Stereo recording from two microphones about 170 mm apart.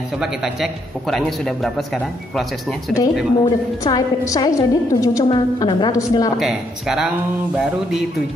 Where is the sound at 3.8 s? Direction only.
20° left (ahead or behind).